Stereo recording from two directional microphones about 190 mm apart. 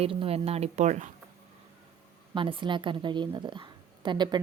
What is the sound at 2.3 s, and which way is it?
A woman's voice, 25° right (ahead or behind).